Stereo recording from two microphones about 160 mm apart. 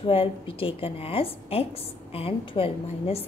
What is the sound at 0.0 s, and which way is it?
A woman's voice, 35° left (ahead or behind).